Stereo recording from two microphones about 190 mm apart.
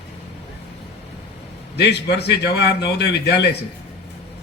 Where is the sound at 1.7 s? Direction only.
60° left (ahead or behind).